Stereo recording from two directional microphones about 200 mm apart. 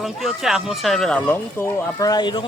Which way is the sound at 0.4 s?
Centre (ahead or behind).